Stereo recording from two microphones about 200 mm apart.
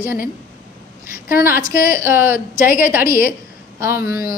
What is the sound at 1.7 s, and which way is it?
A woman's voice, 15° right (ahead or behind).